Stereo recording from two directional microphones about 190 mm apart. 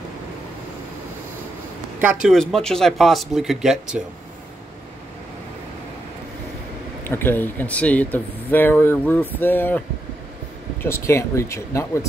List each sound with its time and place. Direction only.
2.0 s speech: 5° right (ahead or behind)
7.1 s speech: 10° left (ahead or behind)